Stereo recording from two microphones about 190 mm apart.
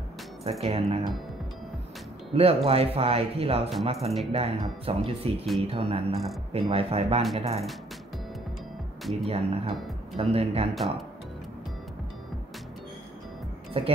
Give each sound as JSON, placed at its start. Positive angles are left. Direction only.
{"t": 0.4, "sound": "speech", "side_deg": -35}
{"t": 2.3, "sound": "speech", "side_deg": -30}
{"t": 9.2, "sound": "speech", "side_deg": -30}
{"t": 10.7, "sound": "speech", "side_deg": 0}
{"t": 13.7, "sound": "speech", "side_deg": -30}